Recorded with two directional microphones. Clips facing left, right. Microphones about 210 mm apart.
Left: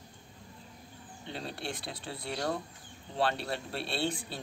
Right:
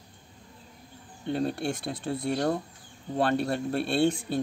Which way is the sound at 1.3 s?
50° right (ahead or behind).